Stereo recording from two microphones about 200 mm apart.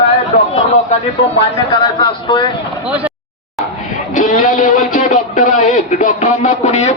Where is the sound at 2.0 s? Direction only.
25° left (ahead or behind).